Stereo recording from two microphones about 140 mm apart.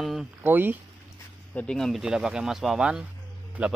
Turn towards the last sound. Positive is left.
turn(degrees=-10)  # may be behind; listen again after turning